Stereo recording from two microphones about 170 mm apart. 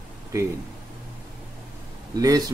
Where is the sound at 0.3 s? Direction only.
15° right (ahead or behind).